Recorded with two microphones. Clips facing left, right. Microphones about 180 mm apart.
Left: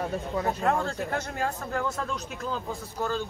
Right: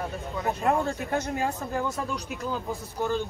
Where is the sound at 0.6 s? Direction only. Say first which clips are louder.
Right 1 dB; 15° right (ahead or behind).